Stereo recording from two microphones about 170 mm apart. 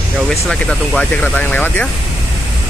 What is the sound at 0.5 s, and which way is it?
Speech, 5° left (ahead or behind).